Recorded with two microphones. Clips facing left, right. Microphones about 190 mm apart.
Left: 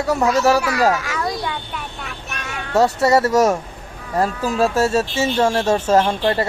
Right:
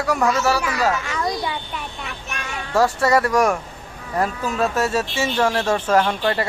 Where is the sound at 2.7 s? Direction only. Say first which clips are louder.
Left 2 dB; 20° left (ahead or behind).